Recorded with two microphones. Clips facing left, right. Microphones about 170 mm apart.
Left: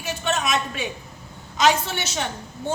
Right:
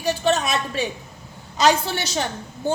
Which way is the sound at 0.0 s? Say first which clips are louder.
Right 5 dB; 35° right (ahead or behind).